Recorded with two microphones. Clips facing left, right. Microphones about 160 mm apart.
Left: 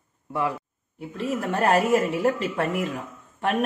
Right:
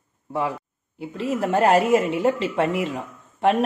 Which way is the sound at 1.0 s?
30° right (ahead or behind).